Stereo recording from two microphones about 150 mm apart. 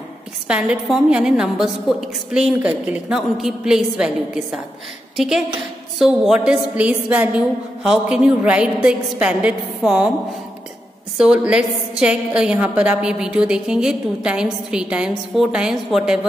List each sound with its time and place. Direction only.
0.5 s a woman's voice: 5° right (ahead or behind)
11.1 s a woman's voice: 5° right (ahead or behind)